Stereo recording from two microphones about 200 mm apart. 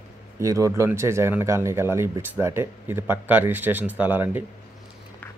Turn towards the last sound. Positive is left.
turn(degrees=-10)  # may be behind; listen again after turning